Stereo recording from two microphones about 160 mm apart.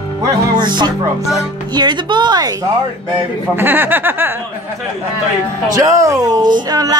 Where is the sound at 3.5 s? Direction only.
10° right (ahead or behind).